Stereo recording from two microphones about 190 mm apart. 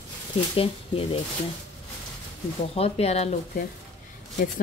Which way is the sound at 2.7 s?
30° left (ahead or behind).